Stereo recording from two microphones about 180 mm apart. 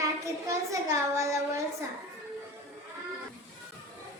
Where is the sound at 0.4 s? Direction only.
15° right (ahead or behind).